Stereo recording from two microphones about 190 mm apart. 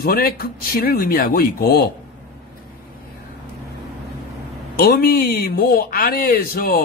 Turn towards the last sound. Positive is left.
turn(degrees=50)  # may be behind; listen again after turning